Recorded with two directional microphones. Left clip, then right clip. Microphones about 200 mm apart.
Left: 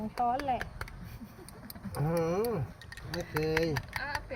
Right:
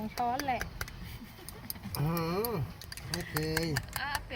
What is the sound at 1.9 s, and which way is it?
Speech, 15° left (ahead or behind).